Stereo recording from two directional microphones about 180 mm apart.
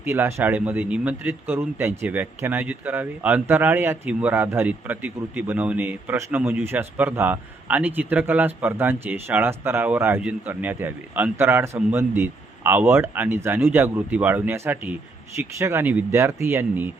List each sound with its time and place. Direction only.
0.0 s a man's voice: 10° right (ahead or behind)